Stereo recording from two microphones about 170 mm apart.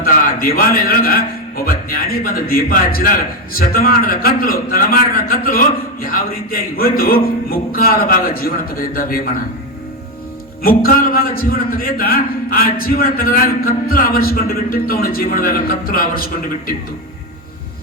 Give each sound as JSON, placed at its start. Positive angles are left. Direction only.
{"t": 0.0, "sound": "a man's voice", "side_deg": 60}
{"t": 10.6, "sound": "a man's voice", "side_deg": 60}